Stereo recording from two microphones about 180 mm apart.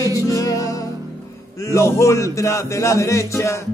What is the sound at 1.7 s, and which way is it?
Music, 15° left (ahead or behind).